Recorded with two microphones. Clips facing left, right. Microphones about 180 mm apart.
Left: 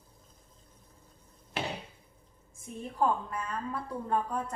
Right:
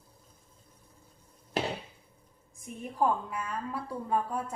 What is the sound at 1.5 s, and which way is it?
Hammer, 40° right (ahead or behind).